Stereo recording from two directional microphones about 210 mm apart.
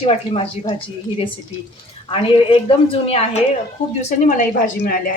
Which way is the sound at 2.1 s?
25° left (ahead or behind).